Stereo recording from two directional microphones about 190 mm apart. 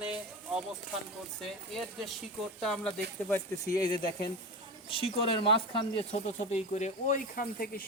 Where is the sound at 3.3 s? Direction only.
15° left (ahead or behind).